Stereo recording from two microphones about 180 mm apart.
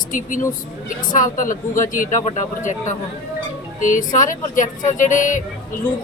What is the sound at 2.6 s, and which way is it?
Music, 45° left (ahead or behind).